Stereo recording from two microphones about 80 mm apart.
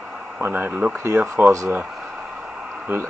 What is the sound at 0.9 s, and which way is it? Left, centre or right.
Speech, right.